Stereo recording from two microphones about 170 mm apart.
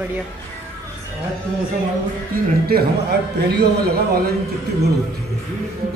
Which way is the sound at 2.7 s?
65° right (ahead or behind).